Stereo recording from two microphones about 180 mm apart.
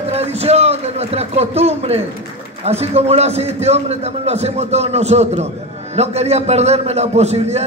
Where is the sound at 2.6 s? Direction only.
35° right (ahead or behind).